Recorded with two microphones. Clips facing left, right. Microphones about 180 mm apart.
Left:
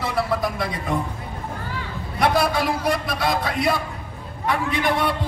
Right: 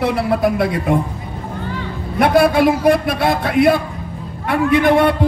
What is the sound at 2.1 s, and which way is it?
A man's voice, 60° right (ahead or behind).